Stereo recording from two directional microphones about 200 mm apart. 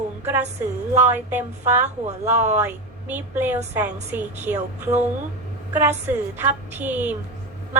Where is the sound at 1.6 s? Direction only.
35° right (ahead or behind).